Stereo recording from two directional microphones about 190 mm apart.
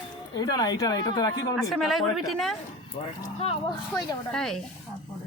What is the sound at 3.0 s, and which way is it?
Speech, 30° left (ahead or behind).